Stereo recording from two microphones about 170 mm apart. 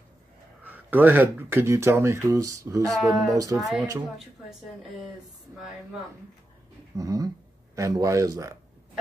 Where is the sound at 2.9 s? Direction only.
Centre (ahead or behind).